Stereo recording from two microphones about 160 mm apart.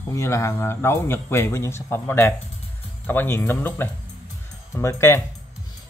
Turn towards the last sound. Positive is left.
turn(degrees=20)  # may be behind; listen again after turning